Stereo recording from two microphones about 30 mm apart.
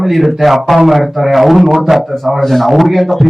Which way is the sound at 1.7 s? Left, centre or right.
Centre.